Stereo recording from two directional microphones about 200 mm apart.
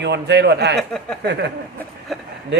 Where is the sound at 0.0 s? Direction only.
60° right (ahead or behind).